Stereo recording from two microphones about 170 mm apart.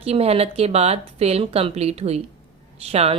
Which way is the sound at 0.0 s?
35° right (ahead or behind).